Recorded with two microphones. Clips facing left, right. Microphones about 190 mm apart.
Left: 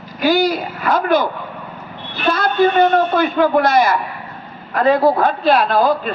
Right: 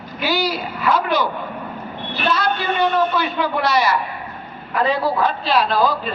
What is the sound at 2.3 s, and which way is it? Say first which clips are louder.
A man's voice: left 10 dB; 50° left (ahead or behind).